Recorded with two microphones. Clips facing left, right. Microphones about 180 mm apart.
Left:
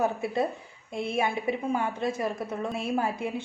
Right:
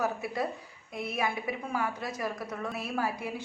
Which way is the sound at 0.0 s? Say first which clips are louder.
Left 4 dB; 25° left (ahead or behind).